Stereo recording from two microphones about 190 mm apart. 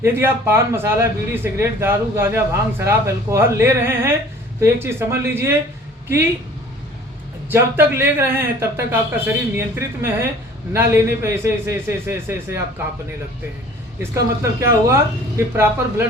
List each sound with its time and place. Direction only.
0.0 s a man's voice: 10° right (ahead or behind)
7.5 s a man's voice: 10° right (ahead or behind)
14.0 s a man's voice: 15° right (ahead or behind)